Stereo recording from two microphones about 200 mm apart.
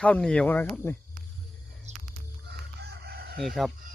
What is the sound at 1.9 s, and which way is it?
Music, 35° right (ahead or behind).